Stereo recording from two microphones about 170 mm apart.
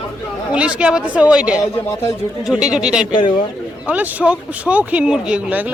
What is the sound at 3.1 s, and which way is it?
Speech, 25° left (ahead or behind).